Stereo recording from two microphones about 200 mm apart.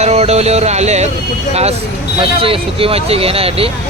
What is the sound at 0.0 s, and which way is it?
Music, 35° right (ahead or behind).